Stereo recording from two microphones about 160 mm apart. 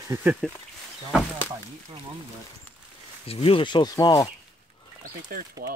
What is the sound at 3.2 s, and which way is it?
Speech, 35° left (ahead or behind).